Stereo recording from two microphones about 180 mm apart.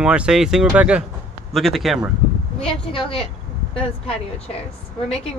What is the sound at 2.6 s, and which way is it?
A woman's voice, 30° left (ahead or behind).